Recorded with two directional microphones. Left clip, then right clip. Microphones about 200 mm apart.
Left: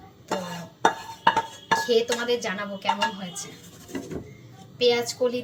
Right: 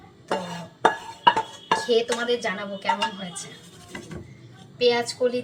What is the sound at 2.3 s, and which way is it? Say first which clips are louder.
Speech: right 1 dB; 15° right (ahead or behind).